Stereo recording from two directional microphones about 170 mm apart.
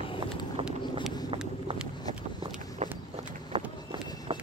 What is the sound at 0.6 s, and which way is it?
Vehicle, 30° right (ahead or behind).